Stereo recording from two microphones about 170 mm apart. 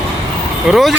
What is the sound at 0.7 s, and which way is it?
Speech, centre (ahead or behind).